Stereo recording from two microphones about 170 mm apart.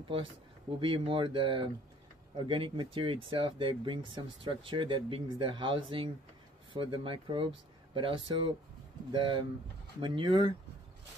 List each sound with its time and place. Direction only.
0.7 s speech: 30° right (ahead or behind)